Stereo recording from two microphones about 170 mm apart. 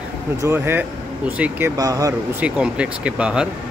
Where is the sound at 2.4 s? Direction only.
5° right (ahead or behind).